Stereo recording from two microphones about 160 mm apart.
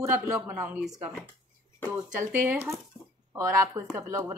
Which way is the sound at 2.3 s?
15° right (ahead or behind).